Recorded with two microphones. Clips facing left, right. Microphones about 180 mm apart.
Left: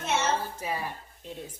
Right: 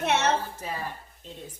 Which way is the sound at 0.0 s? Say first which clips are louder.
Right 3 dB; 65° right (ahead or behind).